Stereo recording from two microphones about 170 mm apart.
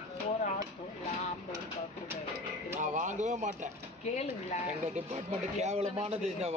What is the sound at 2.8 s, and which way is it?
Speech, 45° right (ahead or behind).